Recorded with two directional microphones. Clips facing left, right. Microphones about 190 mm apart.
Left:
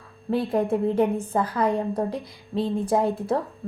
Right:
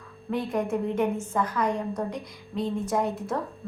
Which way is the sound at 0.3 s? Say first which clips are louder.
Left 4 dB; 30° left (ahead or behind).